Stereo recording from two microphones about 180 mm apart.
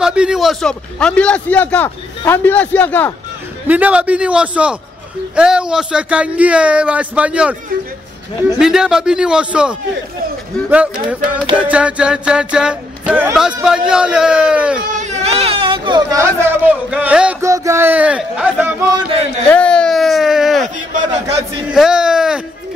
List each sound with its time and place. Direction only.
0.0 s a man's voice: 5° right (ahead or behind)
3.6 s speech: 10° right (ahead or behind)
8.5 s music: 5° right (ahead or behind)
10.7 s speech: 5° right (ahead or behind)
11.5 s music: 5° right (ahead or behind)
14.9 s speech: 40° right (ahead or behind); by 19.2 s 25° right (ahead or behind)
19.5 s a sound: 5° left (ahead or behind)
21.4 s a man's voice: 5° right (ahead or behind)